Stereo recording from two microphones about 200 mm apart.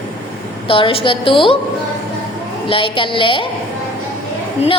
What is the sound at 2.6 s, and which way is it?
Speech, 25° left (ahead or behind).